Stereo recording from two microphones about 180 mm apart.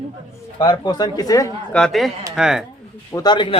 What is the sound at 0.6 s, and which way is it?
Speech, 20° left (ahead or behind).